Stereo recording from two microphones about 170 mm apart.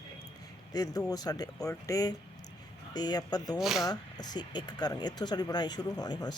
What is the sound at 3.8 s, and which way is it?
Speech, 25° left (ahead or behind).